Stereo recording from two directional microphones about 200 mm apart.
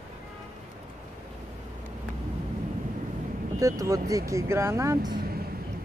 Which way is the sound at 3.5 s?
15° right (ahead or behind).